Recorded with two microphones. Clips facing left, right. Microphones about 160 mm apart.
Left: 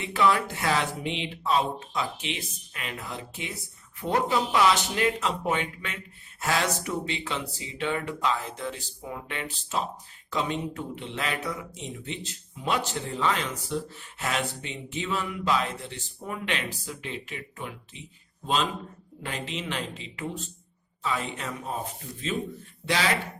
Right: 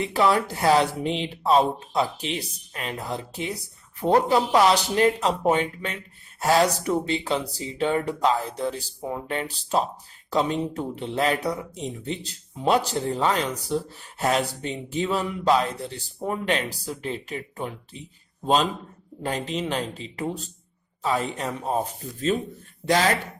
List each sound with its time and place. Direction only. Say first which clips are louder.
0.0 s speech: right 3 dB; 35° right (ahead or behind)
19.2 s speech: right 7 dB; 40° right (ahead or behind)
22.9 s speech: right 6 dB; 45° right (ahead or behind)